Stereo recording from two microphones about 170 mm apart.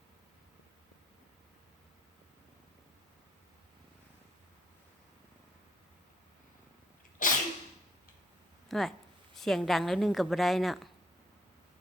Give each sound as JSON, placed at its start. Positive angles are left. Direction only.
{"t": 7.2, "sound": "sneeze", "side_deg": 50}
{"t": 8.7, "sound": "a woman's voice", "side_deg": 0}